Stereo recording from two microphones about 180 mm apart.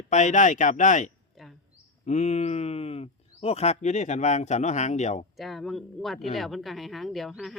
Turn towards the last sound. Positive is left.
turn(degrees=0)  # may be behind; listen again after turning